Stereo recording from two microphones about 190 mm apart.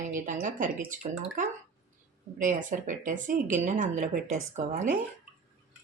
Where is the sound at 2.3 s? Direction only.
45° right (ahead or behind).